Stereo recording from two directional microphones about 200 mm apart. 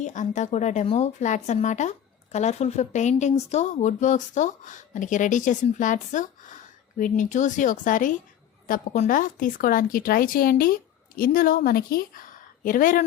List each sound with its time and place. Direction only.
0.0 s a woman's voice: 40° left (ahead or behind)